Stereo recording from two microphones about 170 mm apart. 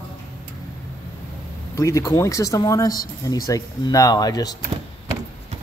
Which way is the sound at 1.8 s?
20° left (ahead or behind).